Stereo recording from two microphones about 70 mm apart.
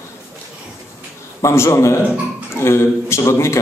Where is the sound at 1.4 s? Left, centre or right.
Left.